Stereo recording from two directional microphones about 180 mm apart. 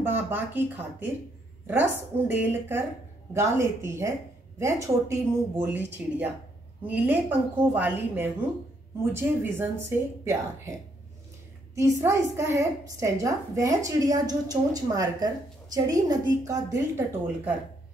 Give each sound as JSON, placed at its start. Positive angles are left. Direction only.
{"t": 0.0, "sound": "a woman's voice", "side_deg": -10}